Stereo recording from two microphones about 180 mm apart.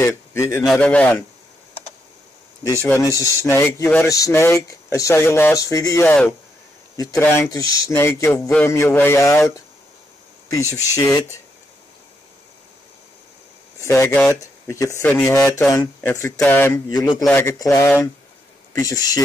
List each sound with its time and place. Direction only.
0.0 s speech: 15° left (ahead or behind)
2.6 s speech: 15° left (ahead or behind)
8.3 s a sound: 5° left (ahead or behind)
8.6 s speech: 15° left (ahead or behind)
11.1 s speech: 20° left (ahead or behind)
13.7 s speech: 15° left (ahead or behind)